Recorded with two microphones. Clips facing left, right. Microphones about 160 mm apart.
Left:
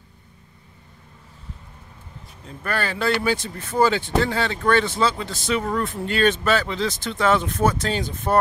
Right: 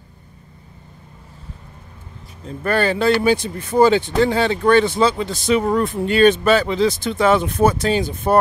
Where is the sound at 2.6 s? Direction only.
25° right (ahead or behind).